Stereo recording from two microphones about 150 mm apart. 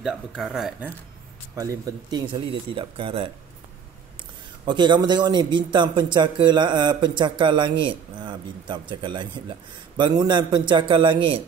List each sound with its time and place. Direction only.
0.0 s speech: 5° right (ahead or behind)
1.5 s speech: 20° right (ahead or behind)
4.6 s speech: 30° right (ahead or behind)